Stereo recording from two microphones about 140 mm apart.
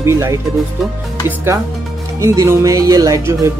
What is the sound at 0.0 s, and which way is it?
Speech, 20° right (ahead or behind).